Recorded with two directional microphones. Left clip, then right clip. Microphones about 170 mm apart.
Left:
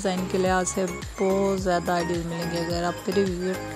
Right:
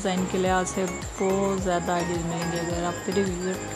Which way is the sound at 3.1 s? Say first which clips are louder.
Left 2 dB; 35° left (ahead or behind).